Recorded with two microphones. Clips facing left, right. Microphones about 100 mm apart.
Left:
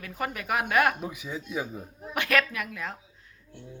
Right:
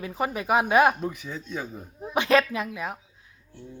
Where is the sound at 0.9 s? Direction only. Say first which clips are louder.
Right 3 dB; 10° left (ahead or behind).